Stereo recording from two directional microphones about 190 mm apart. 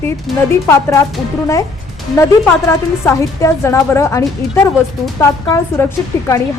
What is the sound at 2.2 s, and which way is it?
A woman's voice, 15° left (ahead or behind).